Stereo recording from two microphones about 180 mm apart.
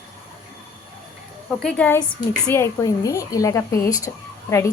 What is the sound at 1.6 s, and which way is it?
A woman's voice, 5° left (ahead or behind).